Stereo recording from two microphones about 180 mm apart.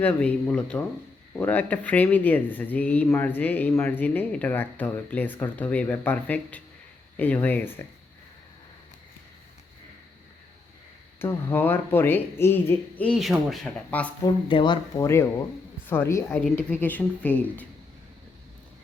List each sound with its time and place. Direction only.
0.0 s speech: 10° left (ahead or behind)
11.2 s speech: 10° left (ahead or behind)
14.4 s speech: 25° left (ahead or behind)
15.0 s speech: 15° left (ahead or behind)